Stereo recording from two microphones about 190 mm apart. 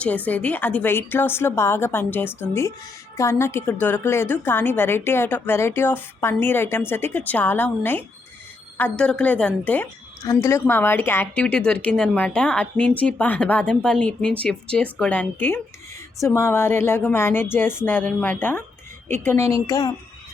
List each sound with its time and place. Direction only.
0.0 s a woman's voice: 10° left (ahead or behind)